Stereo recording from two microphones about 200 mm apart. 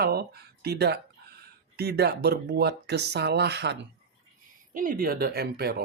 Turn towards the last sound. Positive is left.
turn(degrees=-50)  # may be behind; listen again after turning